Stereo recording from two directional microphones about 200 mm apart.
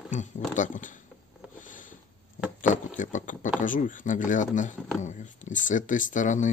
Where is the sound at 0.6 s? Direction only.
40° left (ahead or behind).